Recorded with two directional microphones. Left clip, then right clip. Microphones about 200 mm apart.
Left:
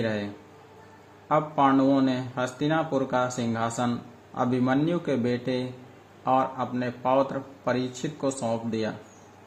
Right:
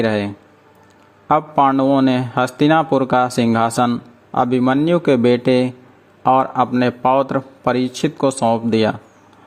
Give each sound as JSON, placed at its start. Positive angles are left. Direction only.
{"t": 0.0, "sound": "a man's voice", "side_deg": -50}
{"t": 1.3, "sound": "a man's voice", "side_deg": -45}